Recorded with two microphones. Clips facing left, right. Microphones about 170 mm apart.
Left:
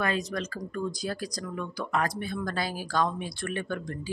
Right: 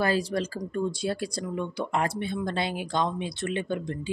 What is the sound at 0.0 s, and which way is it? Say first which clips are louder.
Speech: right 4 dB; 30° right (ahead or behind).